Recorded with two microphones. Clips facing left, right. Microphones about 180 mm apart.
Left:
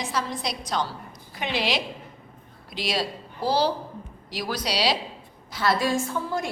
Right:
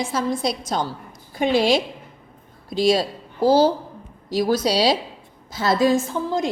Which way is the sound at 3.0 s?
50° right (ahead or behind).